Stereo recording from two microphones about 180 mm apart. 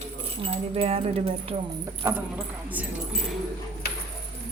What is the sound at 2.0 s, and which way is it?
Speech, 10° right (ahead or behind).